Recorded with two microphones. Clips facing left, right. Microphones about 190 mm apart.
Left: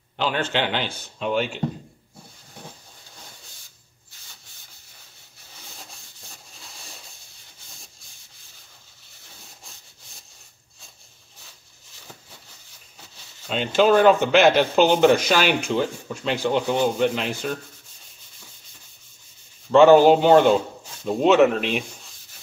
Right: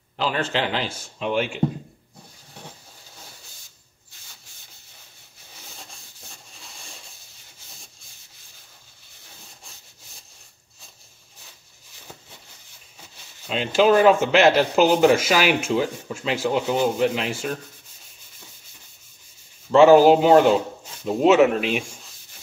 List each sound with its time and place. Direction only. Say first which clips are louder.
0.2 s speech: even; centre (ahead or behind)
6.6 s a sound: even; centre (ahead or behind)
13.5 s speech: even; centre (ahead or behind)
19.7 s speech: even; 5° right (ahead or behind)